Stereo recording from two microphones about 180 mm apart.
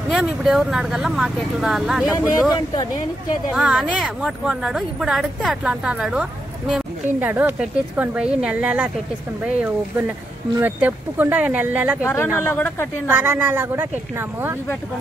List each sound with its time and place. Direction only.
0.1 s a woman's voice: centre (ahead or behind)
2.5 s speech: 20° left (ahead or behind)
3.5 s a woman's voice: 5° right (ahead or behind)
12.0 s speech: 15° left (ahead or behind)
13.1 s a woman's voice: 10° right (ahead or behind)